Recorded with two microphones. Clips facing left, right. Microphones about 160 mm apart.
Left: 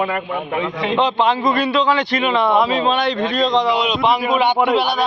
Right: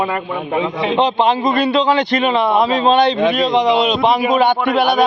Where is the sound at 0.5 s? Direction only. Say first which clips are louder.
Right 3 dB; 25° right (ahead or behind).